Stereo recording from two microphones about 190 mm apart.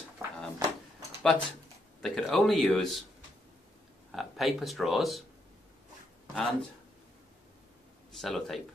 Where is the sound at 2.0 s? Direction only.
Centre (ahead or behind).